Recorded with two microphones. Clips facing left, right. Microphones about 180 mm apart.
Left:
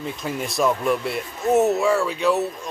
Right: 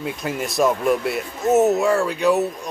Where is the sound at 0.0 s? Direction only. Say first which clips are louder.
Right 2 dB; 5° right (ahead or behind).